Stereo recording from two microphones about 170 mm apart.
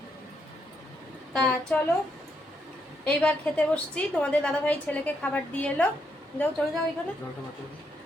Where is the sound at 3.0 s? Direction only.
5° left (ahead or behind).